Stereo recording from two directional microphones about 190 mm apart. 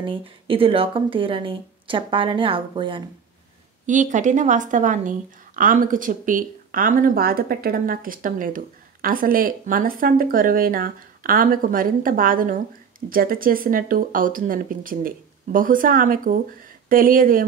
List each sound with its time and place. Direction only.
0.5 s a woman's voice: 30° right (ahead or behind)
3.8 s a woman's voice: 40° right (ahead or behind)